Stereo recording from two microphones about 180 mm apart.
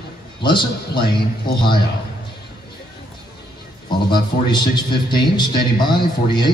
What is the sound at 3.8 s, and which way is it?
A man's voice, 25° left (ahead or behind).